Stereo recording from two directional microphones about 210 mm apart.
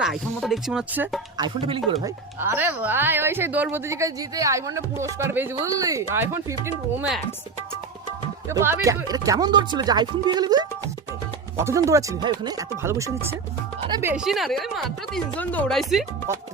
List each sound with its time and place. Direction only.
0.0 s speech: centre (ahead or behind)
1.4 s speech: 25° right (ahead or behind)
2.0 s a woman's voice: 10° right (ahead or behind)
8.4 s a woman's voice: 10° right (ahead or behind)